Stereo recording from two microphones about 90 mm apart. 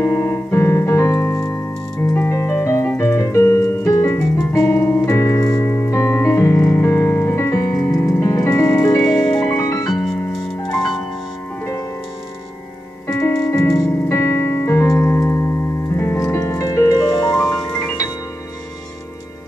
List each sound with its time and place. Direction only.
0.0 s piano: 25° left (ahead or behind)
4.5 s music: 30° left (ahead or behind)
5.9 s piano: 30° left (ahead or behind)
7.7 s music: 15° left (ahead or behind)
8.2 s music: 35° left (ahead or behind)
9.1 s music: 15° left (ahead or behind)
9.6 s music: 40° left (ahead or behind)
13.0 s keyboard: 30° left (ahead or behind)
16.0 s music: 30° left (ahead or behind)